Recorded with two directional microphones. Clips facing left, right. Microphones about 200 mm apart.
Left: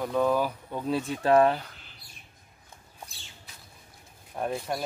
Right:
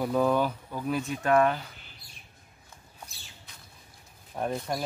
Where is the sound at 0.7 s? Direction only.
25° left (ahead or behind).